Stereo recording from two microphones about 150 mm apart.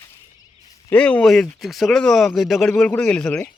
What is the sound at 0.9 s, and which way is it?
A man's voice, 10° left (ahead or behind).